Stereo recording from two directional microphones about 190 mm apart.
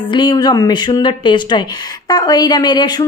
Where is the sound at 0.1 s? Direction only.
20° left (ahead or behind).